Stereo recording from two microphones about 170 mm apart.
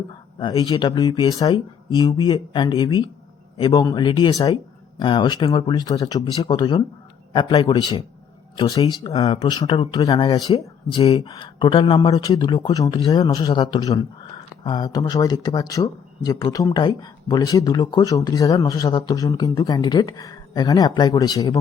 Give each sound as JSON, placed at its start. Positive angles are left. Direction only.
{"t": 0.3, "sound": "speech", "side_deg": 25}
{"t": 6.3, "sound": "speech", "side_deg": 35}